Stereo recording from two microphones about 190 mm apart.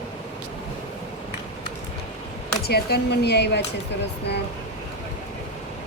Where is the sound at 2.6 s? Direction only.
55° left (ahead or behind).